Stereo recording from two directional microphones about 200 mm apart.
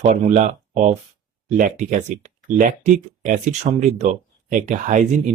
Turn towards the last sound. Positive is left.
turn(degrees=-40)  # may be behind; listen again after turning